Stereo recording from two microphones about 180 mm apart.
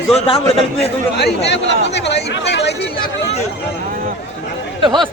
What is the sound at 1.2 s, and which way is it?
Speech, 75° left (ahead or behind).